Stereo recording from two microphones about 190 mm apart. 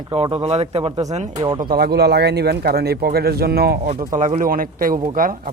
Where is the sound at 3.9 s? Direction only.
40° right (ahead or behind).